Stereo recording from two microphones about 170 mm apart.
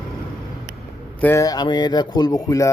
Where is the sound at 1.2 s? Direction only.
15° left (ahead or behind).